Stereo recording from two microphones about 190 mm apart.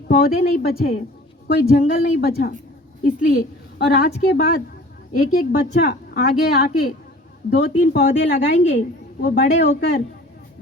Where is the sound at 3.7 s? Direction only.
60° left (ahead or behind).